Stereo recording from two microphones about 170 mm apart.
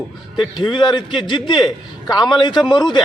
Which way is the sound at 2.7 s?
25° left (ahead or behind).